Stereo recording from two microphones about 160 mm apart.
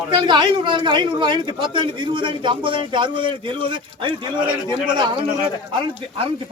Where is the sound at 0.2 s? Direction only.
30° right (ahead or behind).